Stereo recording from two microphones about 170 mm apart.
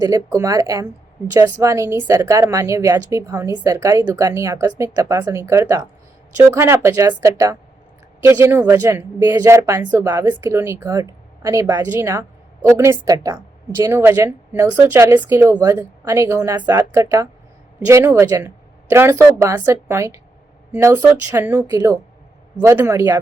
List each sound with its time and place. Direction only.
0.0 s a woman's voice: 20° right (ahead or behind)